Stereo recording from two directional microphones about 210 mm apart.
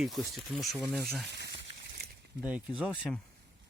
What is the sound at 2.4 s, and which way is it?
Speech, 5° right (ahead or behind).